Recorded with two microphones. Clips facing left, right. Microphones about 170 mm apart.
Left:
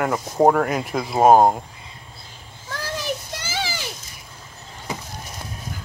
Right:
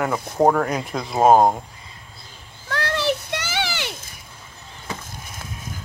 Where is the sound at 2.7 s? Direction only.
70° right (ahead or behind).